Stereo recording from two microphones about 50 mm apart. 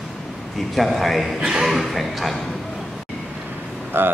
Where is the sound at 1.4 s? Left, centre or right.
Centre.